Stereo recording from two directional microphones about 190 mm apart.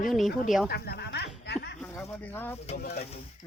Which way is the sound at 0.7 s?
60° left (ahead or behind).